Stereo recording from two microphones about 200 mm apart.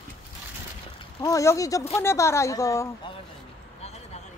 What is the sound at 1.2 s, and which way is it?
A woman's voice, 15° left (ahead or behind).